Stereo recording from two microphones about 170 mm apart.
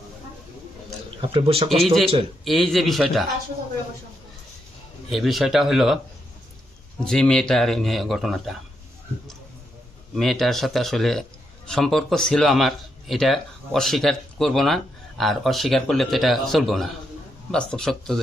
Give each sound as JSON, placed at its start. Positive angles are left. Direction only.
{"t": 1.3, "sound": "speech", "side_deg": -35}
{"t": 1.7, "sound": "speech", "side_deg": 0}
{"t": 5.0, "sound": "speech", "side_deg": 0}
{"t": 7.0, "sound": "speech", "side_deg": 5}
{"t": 10.2, "sound": "speech", "side_deg": 0}